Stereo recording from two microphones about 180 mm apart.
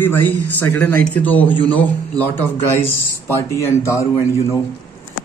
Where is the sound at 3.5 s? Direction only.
15° left (ahead or behind).